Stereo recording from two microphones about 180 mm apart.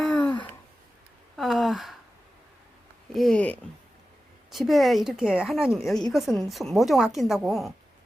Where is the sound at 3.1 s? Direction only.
Centre (ahead or behind).